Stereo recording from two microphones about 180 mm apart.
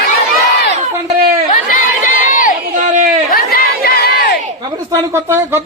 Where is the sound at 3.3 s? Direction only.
55° left (ahead or behind).